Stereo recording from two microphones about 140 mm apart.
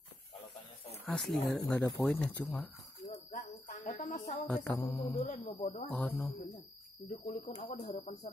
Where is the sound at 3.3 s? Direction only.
70° left (ahead or behind).